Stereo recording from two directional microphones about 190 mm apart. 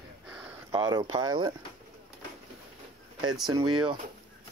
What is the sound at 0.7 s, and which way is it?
Speech, 20° right (ahead or behind).